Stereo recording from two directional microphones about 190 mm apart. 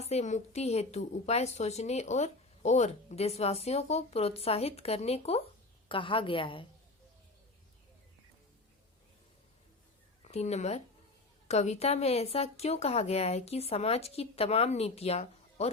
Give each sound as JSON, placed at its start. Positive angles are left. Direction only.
{"t": 0.0, "sound": "a woman's voice", "side_deg": 35}
{"t": 10.2, "sound": "a woman's voice", "side_deg": 35}